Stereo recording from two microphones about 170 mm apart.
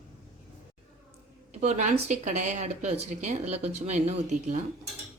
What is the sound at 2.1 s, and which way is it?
Speech, 45° right (ahead or behind).